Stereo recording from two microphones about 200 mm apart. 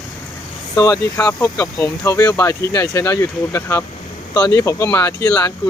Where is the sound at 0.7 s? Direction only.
20° left (ahead or behind).